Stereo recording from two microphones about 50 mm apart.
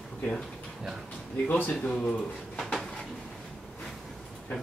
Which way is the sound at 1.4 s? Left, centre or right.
Left.